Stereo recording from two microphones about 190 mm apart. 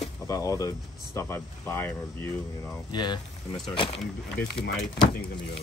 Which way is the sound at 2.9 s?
25° left (ahead or behind).